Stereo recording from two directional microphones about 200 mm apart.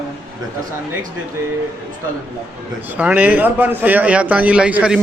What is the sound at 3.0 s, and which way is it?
A man's voice, 5° right (ahead or behind).